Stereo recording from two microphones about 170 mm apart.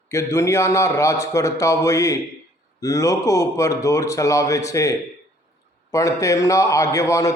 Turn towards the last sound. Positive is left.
turn(degrees=20)  # may be behind; listen again after turning